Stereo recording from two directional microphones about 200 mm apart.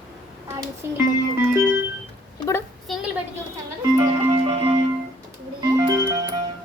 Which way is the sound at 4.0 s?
25° right (ahead or behind).